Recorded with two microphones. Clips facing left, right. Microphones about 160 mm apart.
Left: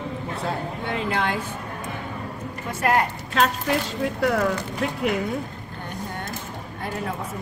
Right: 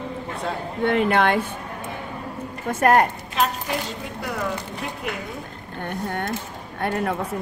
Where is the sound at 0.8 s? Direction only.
60° right (ahead or behind).